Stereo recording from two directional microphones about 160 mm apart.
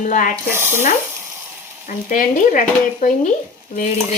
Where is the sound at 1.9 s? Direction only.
55° left (ahead or behind).